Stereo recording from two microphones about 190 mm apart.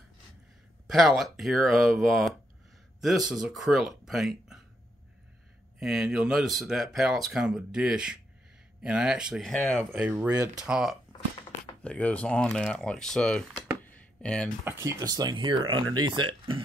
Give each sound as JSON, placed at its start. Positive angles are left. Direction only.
{"t": 0.8, "sound": "speech", "side_deg": 0}
{"t": 5.8, "sound": "speech", "side_deg": 0}
{"t": 9.9, "sound": "speech", "side_deg": -5}
{"t": 10.6, "sound": "speech", "side_deg": 0}
{"t": 14.6, "sound": "speech", "side_deg": -15}